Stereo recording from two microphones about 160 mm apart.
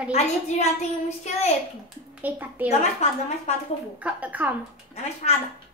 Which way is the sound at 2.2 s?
10° right (ahead or behind).